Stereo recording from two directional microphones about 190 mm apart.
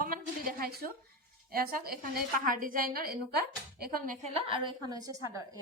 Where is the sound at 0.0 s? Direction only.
50° right (ahead or behind).